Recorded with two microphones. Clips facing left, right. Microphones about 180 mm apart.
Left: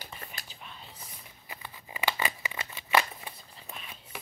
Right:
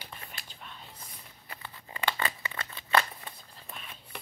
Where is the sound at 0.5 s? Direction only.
5° left (ahead or behind).